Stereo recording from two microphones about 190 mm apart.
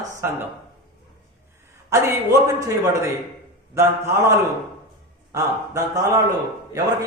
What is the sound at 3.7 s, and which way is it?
Speech, 15° right (ahead or behind).